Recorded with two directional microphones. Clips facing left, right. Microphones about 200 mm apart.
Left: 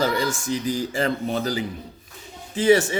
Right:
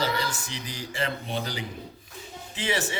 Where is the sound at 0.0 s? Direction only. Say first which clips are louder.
Left 6 dB; 45° left (ahead or behind).